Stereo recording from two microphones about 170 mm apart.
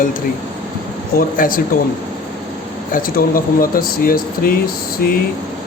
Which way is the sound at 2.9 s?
55° left (ahead or behind).